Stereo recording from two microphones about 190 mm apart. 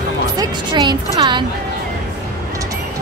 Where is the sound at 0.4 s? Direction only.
25° right (ahead or behind).